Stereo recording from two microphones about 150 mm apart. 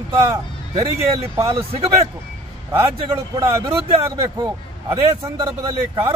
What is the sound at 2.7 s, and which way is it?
Speech, 20° right (ahead or behind).